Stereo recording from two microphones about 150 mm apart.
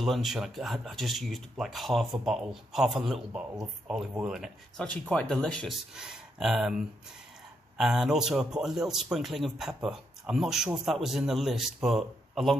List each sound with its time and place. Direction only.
0.0 s speech: centre (ahead or behind)
7.7 s speech: 5° right (ahead or behind)